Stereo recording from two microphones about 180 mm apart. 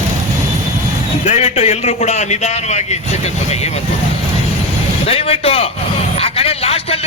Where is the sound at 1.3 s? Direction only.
35° left (ahead or behind).